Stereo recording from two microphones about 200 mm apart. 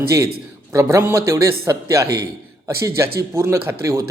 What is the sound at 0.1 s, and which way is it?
A man's voice, 15° right (ahead or behind).